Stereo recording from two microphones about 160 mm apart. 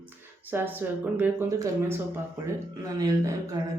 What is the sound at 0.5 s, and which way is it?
Speech, 10° right (ahead or behind).